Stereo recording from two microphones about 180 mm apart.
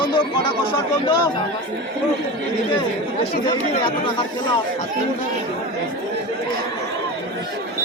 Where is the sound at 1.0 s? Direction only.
25° left (ahead or behind).